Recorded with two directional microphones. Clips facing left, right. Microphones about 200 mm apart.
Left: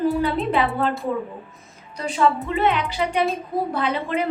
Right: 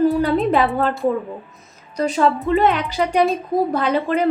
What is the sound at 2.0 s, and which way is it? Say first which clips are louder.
A woman's voice: right 3 dB; 45° right (ahead or behind).